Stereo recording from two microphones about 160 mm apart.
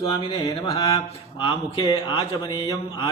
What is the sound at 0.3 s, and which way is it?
A man's voice, 30° left (ahead or behind).